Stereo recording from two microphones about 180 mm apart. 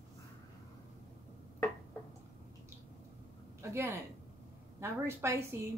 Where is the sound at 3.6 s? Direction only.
15° right (ahead or behind).